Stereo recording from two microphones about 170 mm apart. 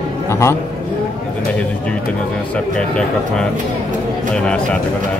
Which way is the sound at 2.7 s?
5° left (ahead or behind).